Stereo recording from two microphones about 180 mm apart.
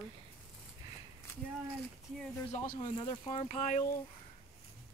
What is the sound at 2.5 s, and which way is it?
Speech, 50° left (ahead or behind).